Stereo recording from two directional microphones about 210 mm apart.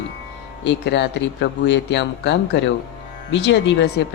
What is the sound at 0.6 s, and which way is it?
A woman's voice, 55° left (ahead or behind).